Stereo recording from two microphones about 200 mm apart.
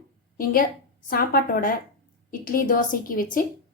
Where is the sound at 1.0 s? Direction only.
45° left (ahead or behind).